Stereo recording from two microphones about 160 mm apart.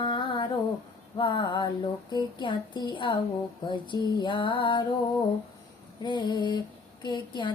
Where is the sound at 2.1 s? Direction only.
30° left (ahead or behind).